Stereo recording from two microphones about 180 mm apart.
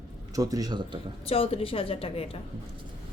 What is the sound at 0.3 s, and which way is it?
Speech, 20° right (ahead or behind).